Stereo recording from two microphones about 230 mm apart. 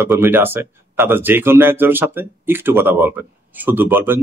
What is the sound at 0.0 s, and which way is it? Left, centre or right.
Speech, centre.